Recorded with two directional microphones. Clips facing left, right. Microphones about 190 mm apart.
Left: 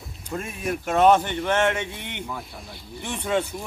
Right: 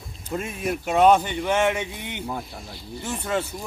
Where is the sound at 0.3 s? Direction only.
15° right (ahead or behind).